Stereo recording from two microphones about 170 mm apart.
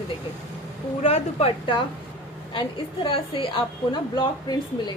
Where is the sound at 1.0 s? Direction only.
35° left (ahead or behind).